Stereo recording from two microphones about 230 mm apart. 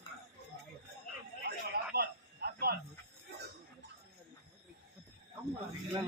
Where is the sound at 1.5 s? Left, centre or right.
Right.